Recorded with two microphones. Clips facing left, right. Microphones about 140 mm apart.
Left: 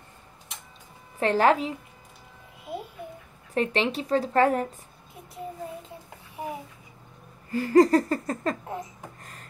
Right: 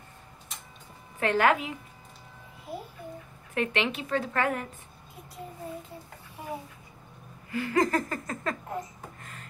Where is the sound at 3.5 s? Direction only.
35° left (ahead or behind).